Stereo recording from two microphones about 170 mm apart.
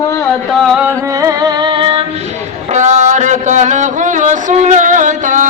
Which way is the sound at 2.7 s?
45° right (ahead or behind).